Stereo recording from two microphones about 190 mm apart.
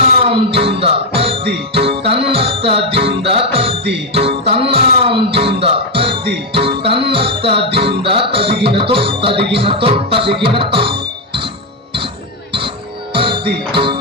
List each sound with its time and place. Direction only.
0.3 s music: 30° right (ahead or behind)
13.1 s music: 25° right (ahead or behind)